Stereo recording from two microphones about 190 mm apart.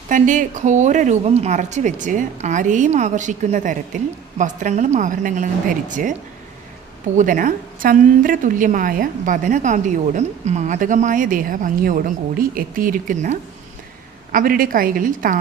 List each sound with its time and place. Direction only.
0.1 s speech: 40° right (ahead or behind)
7.2 s a woman's voice: 45° right (ahead or behind)